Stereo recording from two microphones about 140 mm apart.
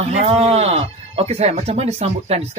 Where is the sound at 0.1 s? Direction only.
45° right (ahead or behind).